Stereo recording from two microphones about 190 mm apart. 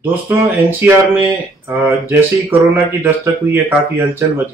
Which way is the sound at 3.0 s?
10° right (ahead or behind).